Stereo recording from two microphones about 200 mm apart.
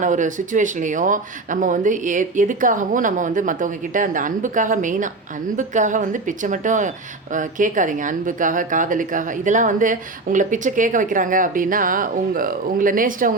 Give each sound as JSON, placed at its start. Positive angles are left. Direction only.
{"t": 0.0, "sound": "speech", "side_deg": -40}